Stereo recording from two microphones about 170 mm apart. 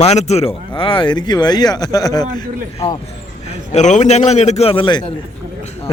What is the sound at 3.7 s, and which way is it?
Speech, 45° left (ahead or behind).